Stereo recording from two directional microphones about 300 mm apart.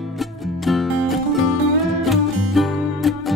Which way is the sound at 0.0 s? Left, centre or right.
Centre.